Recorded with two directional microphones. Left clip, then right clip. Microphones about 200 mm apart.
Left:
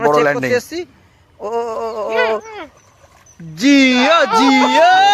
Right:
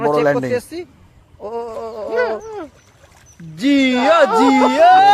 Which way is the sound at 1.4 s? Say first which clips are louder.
Left 5 dB; 40° left (ahead or behind).